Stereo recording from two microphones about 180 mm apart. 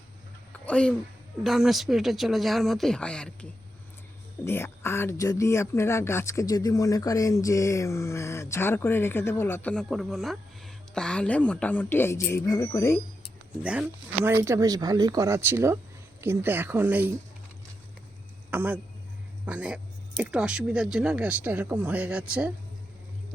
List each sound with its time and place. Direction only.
0.6 s a woman's voice: 5° left (ahead or behind)
13.6 s speech: 5° right (ahead or behind)
18.5 s speech: 10° right (ahead or behind)